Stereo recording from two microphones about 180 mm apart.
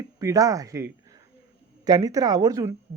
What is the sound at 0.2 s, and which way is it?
Speech, 20° right (ahead or behind).